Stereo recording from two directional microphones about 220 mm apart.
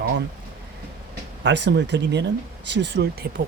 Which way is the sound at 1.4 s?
55° right (ahead or behind).